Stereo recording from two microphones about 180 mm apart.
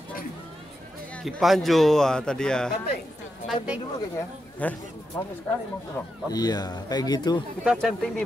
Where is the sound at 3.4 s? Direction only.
5° right (ahead or behind).